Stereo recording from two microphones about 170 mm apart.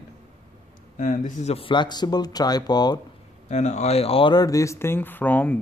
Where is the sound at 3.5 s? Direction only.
40° left (ahead or behind).